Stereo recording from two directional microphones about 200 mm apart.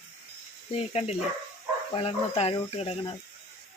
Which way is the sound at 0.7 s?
30° left (ahead or behind).